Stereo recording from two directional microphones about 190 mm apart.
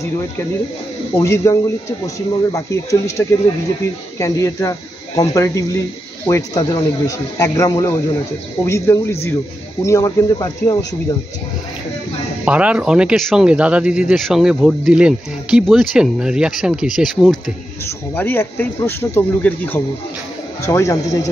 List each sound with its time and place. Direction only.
1.1 s speech: 15° left (ahead or behind)
12.4 s speech: 5° right (ahead or behind); by 21.3 s 15° left (ahead or behind)